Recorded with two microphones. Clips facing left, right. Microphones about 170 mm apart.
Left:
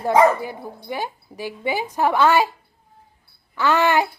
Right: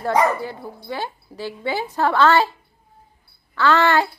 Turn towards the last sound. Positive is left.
turn(degrees=15)  # may be behind; listen again after turning